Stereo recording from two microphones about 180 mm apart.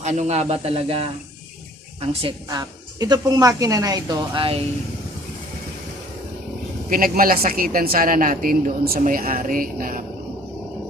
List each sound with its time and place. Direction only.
0.0 s a woman's voice: 40° right (ahead or behind)
6.9 s a woman's voice: 55° right (ahead or behind)